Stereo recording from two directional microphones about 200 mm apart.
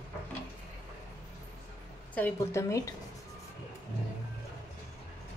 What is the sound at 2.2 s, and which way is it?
Speech, 10° left (ahead or behind).